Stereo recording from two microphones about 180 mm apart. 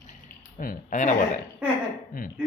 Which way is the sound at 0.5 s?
50° left (ahead or behind).